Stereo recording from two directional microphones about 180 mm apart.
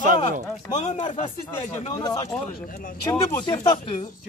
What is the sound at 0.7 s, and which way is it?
Speech, 40° left (ahead or behind).